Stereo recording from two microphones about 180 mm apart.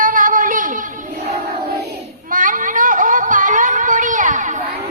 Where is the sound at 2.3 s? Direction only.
50° right (ahead or behind).